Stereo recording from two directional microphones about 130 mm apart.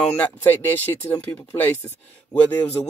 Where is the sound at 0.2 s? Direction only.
15° left (ahead or behind).